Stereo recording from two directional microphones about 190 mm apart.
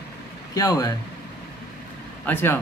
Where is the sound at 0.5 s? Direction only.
20° left (ahead or behind).